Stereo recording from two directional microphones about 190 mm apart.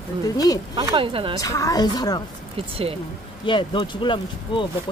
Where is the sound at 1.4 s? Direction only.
20° left (ahead or behind).